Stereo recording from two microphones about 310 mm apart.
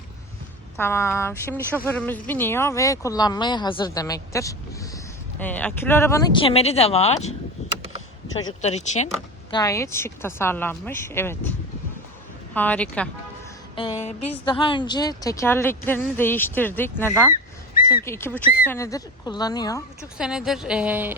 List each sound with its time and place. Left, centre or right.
0.8 s speech: centre
8.4 s speech: left
9.5 s speech: centre
12.5 s speech: centre
13.7 s speech: centre
20.1 s speech: centre